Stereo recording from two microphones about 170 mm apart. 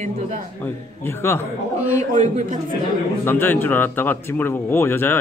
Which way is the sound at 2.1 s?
45° right (ahead or behind).